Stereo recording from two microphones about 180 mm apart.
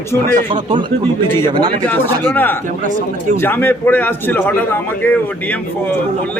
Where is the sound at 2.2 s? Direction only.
10° left (ahead or behind).